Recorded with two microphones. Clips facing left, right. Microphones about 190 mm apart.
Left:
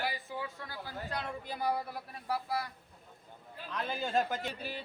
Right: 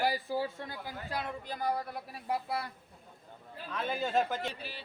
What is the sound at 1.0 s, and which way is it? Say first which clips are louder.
Speech: right 2 dB; 5° right (ahead or behind).